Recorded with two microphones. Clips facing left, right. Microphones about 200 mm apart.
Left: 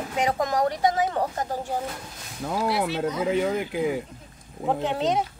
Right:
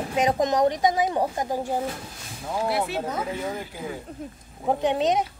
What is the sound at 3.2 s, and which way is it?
Speech, 75° left (ahead or behind).